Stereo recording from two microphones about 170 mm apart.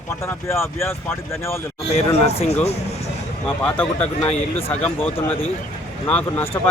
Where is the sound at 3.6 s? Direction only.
5° left (ahead or behind).